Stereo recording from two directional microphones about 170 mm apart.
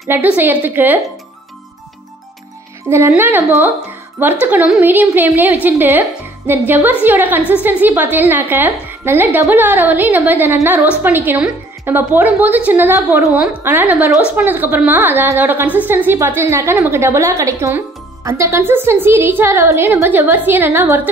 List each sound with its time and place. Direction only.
0.1 s a woman's voice: 10° right (ahead or behind)
2.9 s a woman's voice: 15° right (ahead or behind)